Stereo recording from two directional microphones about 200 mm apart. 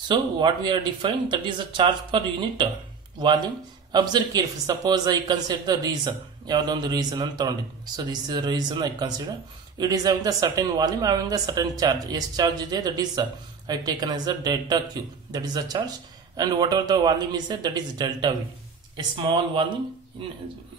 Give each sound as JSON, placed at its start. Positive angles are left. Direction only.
{"t": 0.1, "sound": "a man's voice", "side_deg": -25}
{"t": 3.9, "sound": "a man's voice", "side_deg": -20}